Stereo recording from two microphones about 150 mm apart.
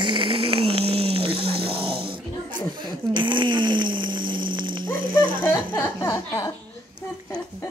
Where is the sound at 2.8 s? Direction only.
30° right (ahead or behind).